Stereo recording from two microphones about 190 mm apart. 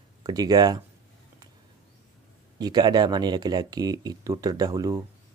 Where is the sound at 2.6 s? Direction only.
20° right (ahead or behind).